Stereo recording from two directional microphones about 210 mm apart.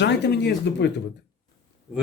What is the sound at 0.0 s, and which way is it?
Speech, 55° left (ahead or behind).